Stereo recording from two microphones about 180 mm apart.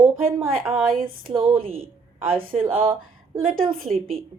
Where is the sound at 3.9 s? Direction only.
45° right (ahead or behind).